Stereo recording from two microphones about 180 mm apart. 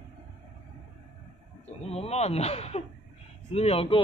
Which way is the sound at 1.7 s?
35° left (ahead or behind).